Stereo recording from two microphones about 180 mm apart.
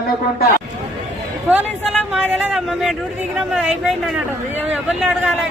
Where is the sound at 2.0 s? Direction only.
5° right (ahead or behind).